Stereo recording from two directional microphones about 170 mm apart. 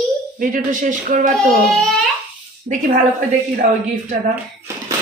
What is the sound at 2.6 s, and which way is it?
Speech, 50° right (ahead or behind).